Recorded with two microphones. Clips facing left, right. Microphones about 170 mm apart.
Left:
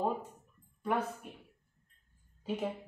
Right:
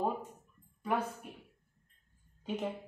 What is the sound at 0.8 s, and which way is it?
Speech, centre (ahead or behind).